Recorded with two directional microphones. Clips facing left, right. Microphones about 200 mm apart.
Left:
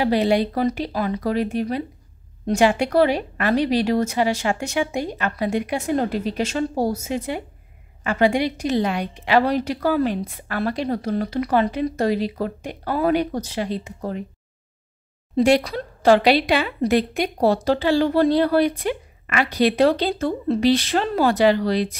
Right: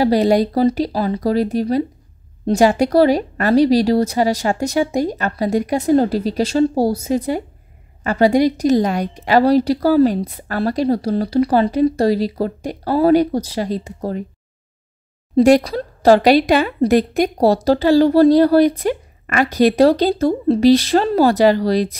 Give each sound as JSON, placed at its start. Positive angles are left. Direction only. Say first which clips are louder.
{"t": 0.0, "sound": "speech", "louder": "right 5 dB", "side_deg": -40}
{"t": 15.3, "sound": "speech", "louder": "right 6 dB", "side_deg": -40}